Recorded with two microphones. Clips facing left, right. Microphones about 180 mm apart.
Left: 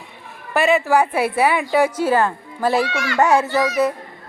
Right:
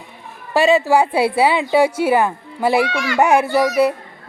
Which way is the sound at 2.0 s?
10° right (ahead or behind).